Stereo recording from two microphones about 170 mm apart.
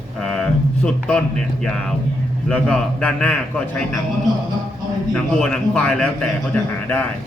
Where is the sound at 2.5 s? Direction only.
5° left (ahead or behind).